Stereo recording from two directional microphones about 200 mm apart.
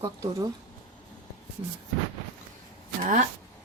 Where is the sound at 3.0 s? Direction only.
40° right (ahead or behind).